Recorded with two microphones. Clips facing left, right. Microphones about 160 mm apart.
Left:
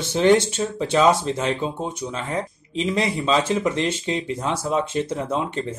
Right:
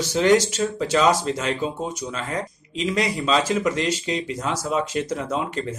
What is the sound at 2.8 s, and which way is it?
Speech, 25° left (ahead or behind).